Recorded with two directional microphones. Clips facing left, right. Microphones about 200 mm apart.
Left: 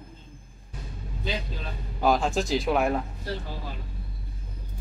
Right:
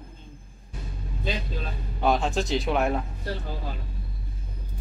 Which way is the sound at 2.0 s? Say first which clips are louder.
Left 1 dB; centre (ahead or behind).